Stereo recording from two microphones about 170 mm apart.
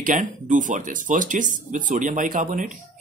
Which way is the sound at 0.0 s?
50° right (ahead or behind).